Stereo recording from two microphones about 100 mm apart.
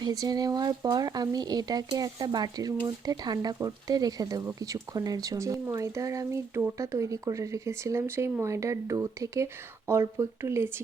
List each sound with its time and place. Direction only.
0.0 s speech: 40° right (ahead or behind)